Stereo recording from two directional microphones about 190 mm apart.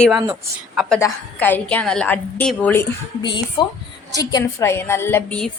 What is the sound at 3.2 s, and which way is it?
A woman's voice, 25° left (ahead or behind).